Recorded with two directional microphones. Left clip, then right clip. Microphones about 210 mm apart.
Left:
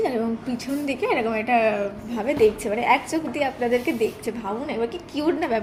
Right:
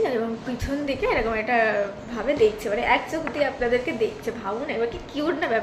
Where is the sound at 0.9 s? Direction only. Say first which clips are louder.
Even; 40° left (ahead or behind).